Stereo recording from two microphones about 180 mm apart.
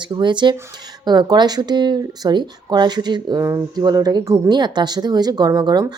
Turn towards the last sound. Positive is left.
turn(degrees=-20)  # may be behind; listen again after turning